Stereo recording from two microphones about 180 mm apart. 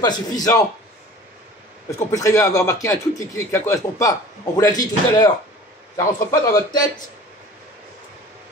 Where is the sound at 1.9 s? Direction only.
15° left (ahead or behind).